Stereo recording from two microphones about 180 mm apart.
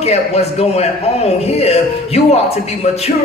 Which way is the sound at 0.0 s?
35° left (ahead or behind).